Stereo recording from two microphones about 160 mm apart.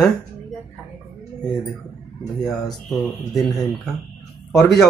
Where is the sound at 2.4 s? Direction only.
5° left (ahead or behind).